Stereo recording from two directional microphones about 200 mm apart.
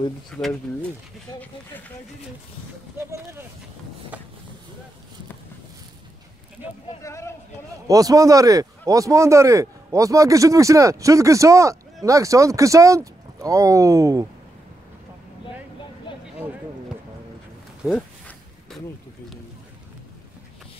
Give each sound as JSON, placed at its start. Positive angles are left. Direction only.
{"t": 0.3, "sound": "speech", "side_deg": 0}
{"t": 3.0, "sound": "speech", "side_deg": -15}
{"t": 6.6, "sound": "speech", "side_deg": -10}
{"t": 7.0, "sound": "speech", "side_deg": 15}
{"t": 7.9, "sound": "speech", "side_deg": -15}
{"t": 17.8, "sound": "a sound", "side_deg": 5}